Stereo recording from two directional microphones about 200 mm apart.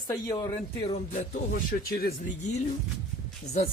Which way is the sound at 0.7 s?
30° left (ahead or behind).